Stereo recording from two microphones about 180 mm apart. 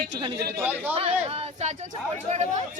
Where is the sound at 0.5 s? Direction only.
10° right (ahead or behind).